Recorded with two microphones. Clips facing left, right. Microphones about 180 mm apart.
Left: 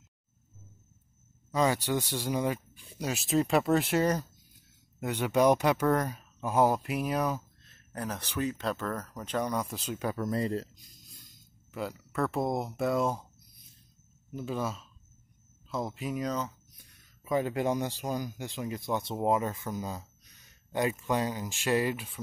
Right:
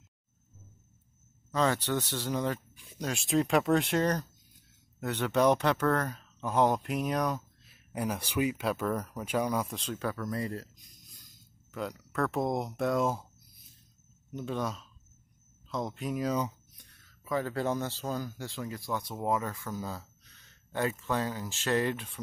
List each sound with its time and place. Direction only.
1.5 s speech: 10° left (ahead or behind)
7.7 s speech: 10° right (ahead or behind); by 10.1 s 10° left (ahead or behind)
10.1 s speech: 25° left (ahead or behind)
11.7 s speech: 5° left (ahead or behind)
14.3 s speech: 5° left (ahead or behind)
16.9 s speech: 15° left (ahead or behind)